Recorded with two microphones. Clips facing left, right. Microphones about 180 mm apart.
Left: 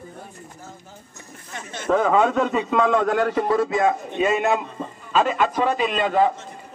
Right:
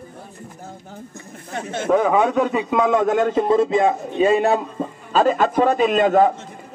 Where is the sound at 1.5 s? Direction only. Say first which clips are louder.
Right 8 dB; 55° right (ahead or behind).